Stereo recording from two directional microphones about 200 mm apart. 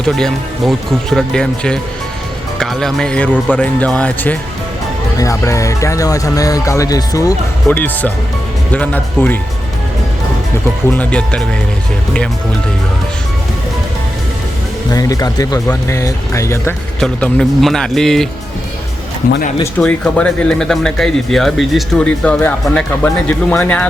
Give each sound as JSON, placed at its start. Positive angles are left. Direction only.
{"t": 0.0, "sound": "speech", "side_deg": 0}
{"t": 10.9, "sound": "speech", "side_deg": 5}
{"t": 14.8, "sound": "speech", "side_deg": 15}
{"t": 19.8, "sound": "speech", "side_deg": 5}